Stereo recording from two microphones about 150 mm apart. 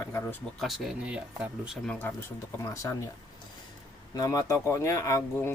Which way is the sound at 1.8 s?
10° left (ahead or behind).